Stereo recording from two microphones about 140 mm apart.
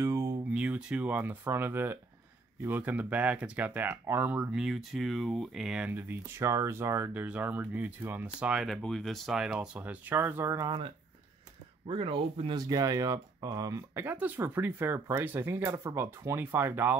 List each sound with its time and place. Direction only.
0.0 s a sound: 20° right (ahead or behind)
0.5 s speech: 10° right (ahead or behind)
11.9 s speech: 40° right (ahead or behind); by 16.9 s 15° right (ahead or behind)